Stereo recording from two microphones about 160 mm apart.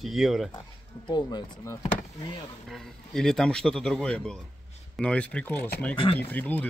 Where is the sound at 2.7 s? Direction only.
5° left (ahead or behind).